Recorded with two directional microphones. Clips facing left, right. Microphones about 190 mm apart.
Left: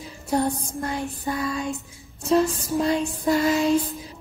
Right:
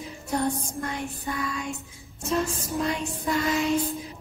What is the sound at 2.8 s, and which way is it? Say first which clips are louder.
Music: left 6 dB; 35° left (ahead or behind).